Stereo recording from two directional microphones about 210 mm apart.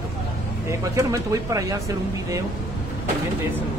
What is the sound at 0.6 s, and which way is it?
Speech, 15° right (ahead or behind).